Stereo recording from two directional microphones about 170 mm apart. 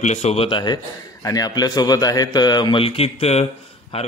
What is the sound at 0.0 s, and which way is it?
A man's voice, 40° left (ahead or behind).